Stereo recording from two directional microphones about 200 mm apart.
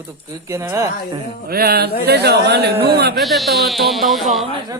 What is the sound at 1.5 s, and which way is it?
Speech, 50° right (ahead or behind).